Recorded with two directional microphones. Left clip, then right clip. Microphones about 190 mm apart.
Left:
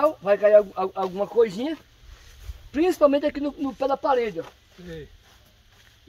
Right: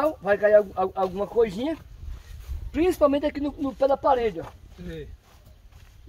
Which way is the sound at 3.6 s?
15° left (ahead or behind).